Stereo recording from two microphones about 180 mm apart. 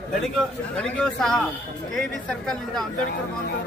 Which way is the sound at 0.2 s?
5° left (ahead or behind).